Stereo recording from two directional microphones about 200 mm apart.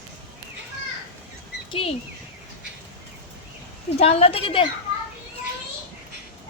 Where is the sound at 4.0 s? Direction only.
30° left (ahead or behind).